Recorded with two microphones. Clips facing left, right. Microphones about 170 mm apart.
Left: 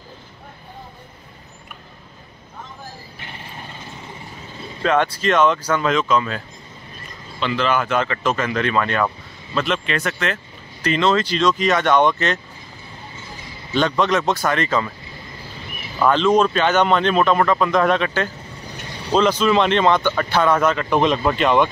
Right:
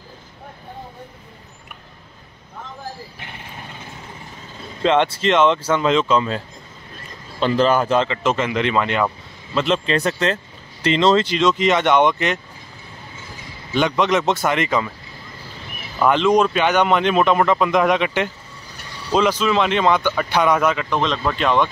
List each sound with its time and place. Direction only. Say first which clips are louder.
4.8 s speech: right 2 dB; 25° right (ahead or behind)
7.3 s speech: right 4 dB; 40° right (ahead or behind)
8.1 s speech: right 1 dB; 20° right (ahead or behind)
9.6 s speech: right 3 dB; 30° right (ahead or behind)
13.7 s speech: even; 15° right (ahead or behind)
16.1 s speech: even; 15° right (ahead or behind)
20.9 s speech: left 3 dB; 10° left (ahead or behind)